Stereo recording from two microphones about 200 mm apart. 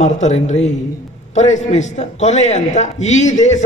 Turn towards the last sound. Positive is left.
turn(degrees=35)  # may be behind; listen again after turning